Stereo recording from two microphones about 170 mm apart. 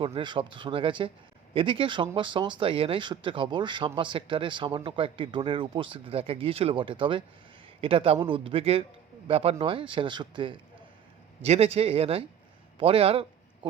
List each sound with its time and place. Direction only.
0.0 s a man's voice: 30° right (ahead or behind)